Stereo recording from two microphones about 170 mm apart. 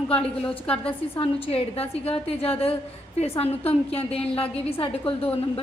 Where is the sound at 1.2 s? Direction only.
35° left (ahead or behind).